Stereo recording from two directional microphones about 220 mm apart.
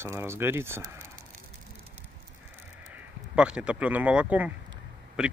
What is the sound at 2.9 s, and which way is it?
Speech, 5° right (ahead or behind).